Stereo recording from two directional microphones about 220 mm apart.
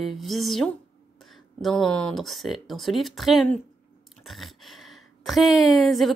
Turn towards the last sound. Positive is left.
turn(degrees=0)  # may be behind; listen again after turning